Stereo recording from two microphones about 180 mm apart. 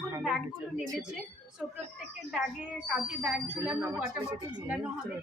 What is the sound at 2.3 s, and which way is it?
Speech, 5° right (ahead or behind).